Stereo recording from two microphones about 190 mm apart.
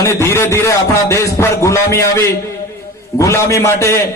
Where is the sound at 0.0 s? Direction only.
15° left (ahead or behind).